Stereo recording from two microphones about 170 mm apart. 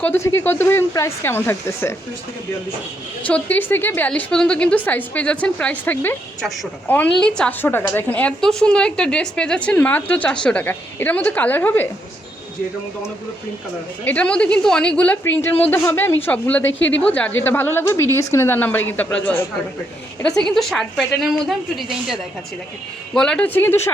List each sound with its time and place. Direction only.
0.0 s a woman's voice: 15° left (ahead or behind)
3.2 s a woman's voice: 10° left (ahead or behind)
6.4 s a woman's voice: centre (ahead or behind)
14.0 s a woman's voice: 10° left (ahead or behind)
16.7 s speech: 90° left
17.0 s a woman's voice: 10° left (ahead or behind)